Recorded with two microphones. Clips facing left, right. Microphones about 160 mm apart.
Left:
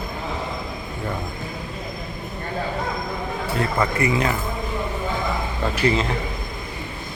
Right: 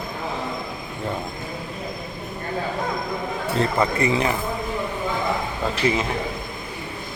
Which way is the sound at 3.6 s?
25° right (ahead or behind).